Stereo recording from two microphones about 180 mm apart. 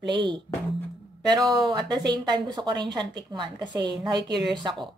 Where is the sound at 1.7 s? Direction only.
25° right (ahead or behind).